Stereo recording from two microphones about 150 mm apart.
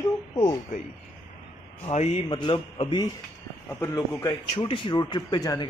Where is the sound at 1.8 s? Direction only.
45° left (ahead or behind).